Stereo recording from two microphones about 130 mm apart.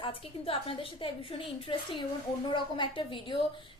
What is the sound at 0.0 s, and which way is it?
A woman's voice, 45° left (ahead or behind).